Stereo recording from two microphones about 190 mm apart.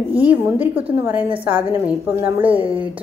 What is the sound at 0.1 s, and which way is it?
A woman's voice, 10° right (ahead or behind).